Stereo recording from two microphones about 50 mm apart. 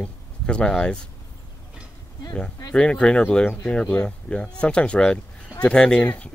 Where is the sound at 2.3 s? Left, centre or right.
Left.